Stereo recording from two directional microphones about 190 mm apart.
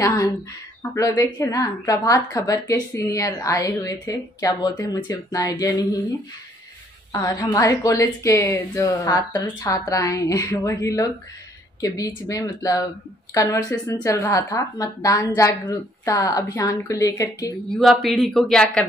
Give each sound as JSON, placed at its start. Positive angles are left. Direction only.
{"t": 0.0, "sound": "speech", "side_deg": 15}
{"t": 7.1, "sound": "speech", "side_deg": 20}
{"t": 17.6, "sound": "speech", "side_deg": 0}